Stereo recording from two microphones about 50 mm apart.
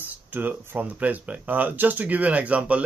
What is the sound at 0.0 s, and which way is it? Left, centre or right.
Speech, right.